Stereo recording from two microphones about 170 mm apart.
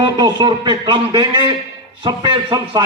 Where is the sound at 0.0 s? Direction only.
25° right (ahead or behind).